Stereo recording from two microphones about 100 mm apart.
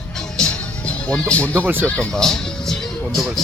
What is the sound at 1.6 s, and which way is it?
Speech, 20° right (ahead or behind).